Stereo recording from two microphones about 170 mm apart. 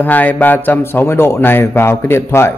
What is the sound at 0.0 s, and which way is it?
A man's voice, 10° left (ahead or behind).